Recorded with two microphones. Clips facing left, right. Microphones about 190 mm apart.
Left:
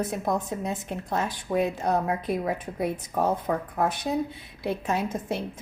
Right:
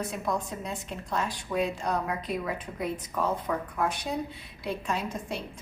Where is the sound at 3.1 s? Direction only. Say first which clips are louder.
Left 4 dB; 45° left (ahead or behind).